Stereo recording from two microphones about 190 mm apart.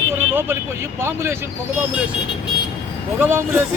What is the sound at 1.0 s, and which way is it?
Speech, 15° right (ahead or behind).